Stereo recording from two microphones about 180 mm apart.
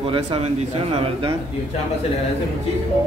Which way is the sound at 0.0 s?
30° right (ahead or behind).